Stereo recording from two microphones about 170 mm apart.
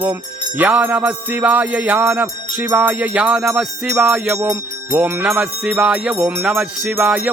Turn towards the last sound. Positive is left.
turn(degrees=-10)  # may be behind; listen again after turning